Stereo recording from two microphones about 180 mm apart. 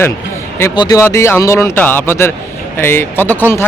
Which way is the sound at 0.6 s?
20° left (ahead or behind).